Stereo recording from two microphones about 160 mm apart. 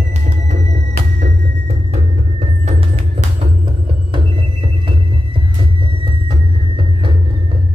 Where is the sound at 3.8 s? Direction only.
30° right (ahead or behind).